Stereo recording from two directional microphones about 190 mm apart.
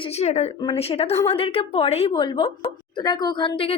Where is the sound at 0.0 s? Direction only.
35° left (ahead or behind).